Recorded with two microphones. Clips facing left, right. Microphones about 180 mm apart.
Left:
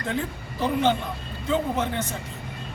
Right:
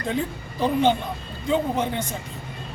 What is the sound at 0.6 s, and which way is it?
A woman's voice, 15° right (ahead or behind).